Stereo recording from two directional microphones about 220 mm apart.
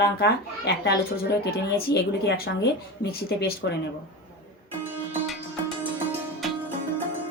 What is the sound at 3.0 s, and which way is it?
Speech, 45° left (ahead or behind).